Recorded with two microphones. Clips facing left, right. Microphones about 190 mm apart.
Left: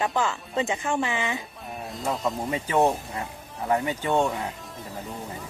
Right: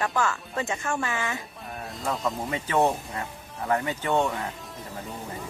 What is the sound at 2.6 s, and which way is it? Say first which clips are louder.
Speech: left 1 dB; 15° left (ahead or behind).